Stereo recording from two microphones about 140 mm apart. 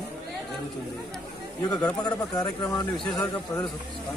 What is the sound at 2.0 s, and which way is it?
Speech, 25° left (ahead or behind).